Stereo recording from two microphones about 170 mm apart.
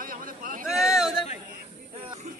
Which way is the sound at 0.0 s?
55° right (ahead or behind).